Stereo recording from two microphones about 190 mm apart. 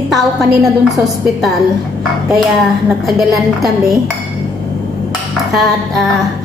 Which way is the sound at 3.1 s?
Centre (ahead or behind).